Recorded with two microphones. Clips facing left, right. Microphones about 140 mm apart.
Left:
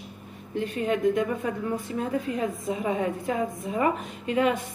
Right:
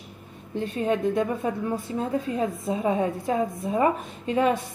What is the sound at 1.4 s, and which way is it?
A woman's voice, 25° right (ahead or behind).